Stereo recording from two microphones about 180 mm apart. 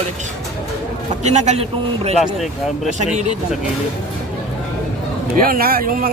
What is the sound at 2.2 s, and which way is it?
Speech, centre (ahead or behind).